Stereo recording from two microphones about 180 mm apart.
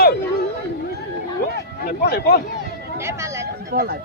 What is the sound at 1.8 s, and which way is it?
Speech, 60° left (ahead or behind).